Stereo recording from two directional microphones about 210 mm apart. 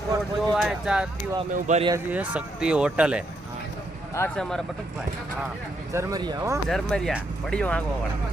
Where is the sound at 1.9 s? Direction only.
10° right (ahead or behind).